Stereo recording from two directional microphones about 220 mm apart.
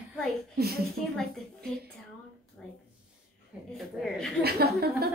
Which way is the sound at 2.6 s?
5° left (ahead or behind).